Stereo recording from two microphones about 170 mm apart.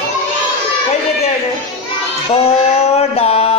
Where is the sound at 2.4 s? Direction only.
35° left (ahead or behind).